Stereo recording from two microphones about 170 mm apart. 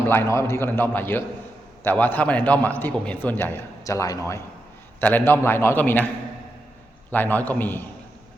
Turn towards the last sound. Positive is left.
turn(degrees=10)  # may be behind; listen again after turning